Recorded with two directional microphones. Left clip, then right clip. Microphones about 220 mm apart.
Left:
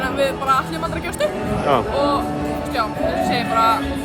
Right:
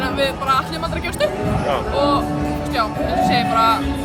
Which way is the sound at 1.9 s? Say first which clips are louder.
Right 1 dB; centre (ahead or behind).